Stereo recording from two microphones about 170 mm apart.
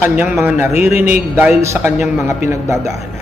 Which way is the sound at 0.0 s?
10° right (ahead or behind).